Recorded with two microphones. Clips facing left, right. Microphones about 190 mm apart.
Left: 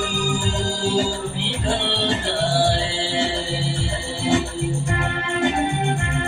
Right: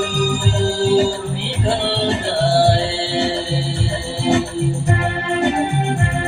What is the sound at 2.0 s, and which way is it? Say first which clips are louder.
Music: right 4 dB; 40° right (ahead or behind).